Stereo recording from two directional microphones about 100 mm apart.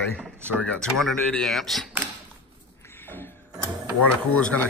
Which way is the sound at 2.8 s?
20° left (ahead or behind).